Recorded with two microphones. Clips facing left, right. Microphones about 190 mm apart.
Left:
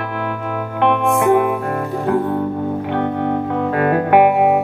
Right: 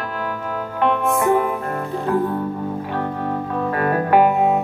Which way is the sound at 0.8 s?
65° left (ahead or behind).